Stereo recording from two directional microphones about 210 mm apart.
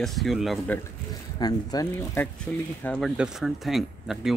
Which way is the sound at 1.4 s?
15° left (ahead or behind).